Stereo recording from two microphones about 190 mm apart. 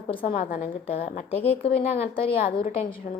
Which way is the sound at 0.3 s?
45° left (ahead or behind).